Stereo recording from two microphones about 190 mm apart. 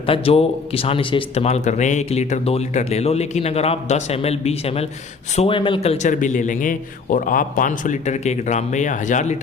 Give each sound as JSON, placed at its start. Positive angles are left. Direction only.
{"t": 0.0, "sound": "a man's voice", "side_deg": 30}